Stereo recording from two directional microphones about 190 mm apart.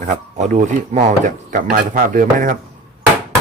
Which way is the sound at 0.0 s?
40° right (ahead or behind).